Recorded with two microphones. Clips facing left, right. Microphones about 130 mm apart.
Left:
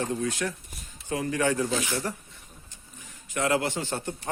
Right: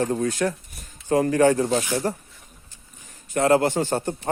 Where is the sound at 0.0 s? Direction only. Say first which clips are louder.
Right 6 dB; 45° right (ahead or behind).